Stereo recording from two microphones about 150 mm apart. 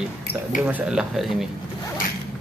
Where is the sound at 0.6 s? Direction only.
10° right (ahead or behind).